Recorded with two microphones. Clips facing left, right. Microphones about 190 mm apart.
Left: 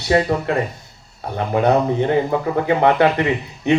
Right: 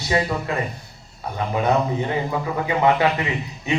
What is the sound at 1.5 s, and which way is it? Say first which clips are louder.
A man's voice: left 5 dB; 55° left (ahead or behind).